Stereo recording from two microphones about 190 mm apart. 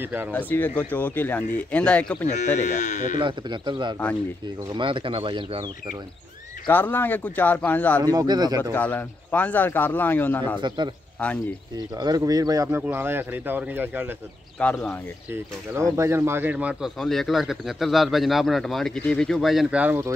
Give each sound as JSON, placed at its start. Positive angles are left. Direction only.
{"t": 0.0, "sound": "speech", "side_deg": -10}
{"t": 0.3, "sound": "speech", "side_deg": 10}
{"t": 2.2, "sound": "speech", "side_deg": 40}
{"t": 3.2, "sound": "speech", "side_deg": -25}
{"t": 6.7, "sound": "speech", "side_deg": 10}
{"t": 8.0, "sound": "speech", "side_deg": -20}
{"t": 8.7, "sound": "a man's voice", "side_deg": 10}
{"t": 11.7, "sound": "speech", "side_deg": -20}
{"t": 14.6, "sound": "speech", "side_deg": 5}
{"t": 15.7, "sound": "a man's voice", "side_deg": -15}